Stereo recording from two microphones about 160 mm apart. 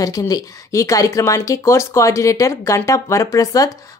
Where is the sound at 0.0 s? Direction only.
20° left (ahead or behind).